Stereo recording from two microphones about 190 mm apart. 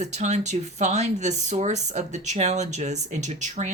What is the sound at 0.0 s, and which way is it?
Speech, 40° right (ahead or behind).